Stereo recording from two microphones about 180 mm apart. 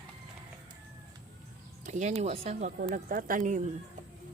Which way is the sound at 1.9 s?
40° right (ahead or behind).